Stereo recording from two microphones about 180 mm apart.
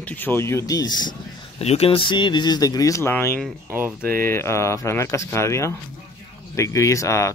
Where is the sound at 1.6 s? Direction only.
35° left (ahead or behind).